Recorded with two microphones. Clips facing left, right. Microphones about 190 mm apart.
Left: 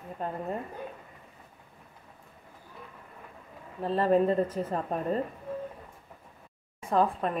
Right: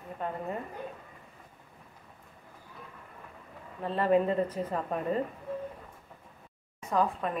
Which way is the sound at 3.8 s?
35° left (ahead or behind).